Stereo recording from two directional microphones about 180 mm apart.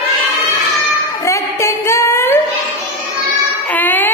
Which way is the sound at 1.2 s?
15° left (ahead or behind).